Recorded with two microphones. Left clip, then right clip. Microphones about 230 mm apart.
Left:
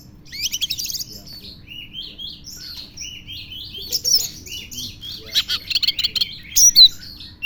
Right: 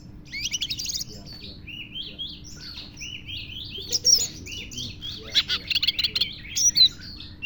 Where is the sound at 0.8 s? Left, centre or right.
Centre.